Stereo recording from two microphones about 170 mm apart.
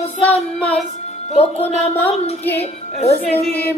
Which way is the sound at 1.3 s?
35° left (ahead or behind).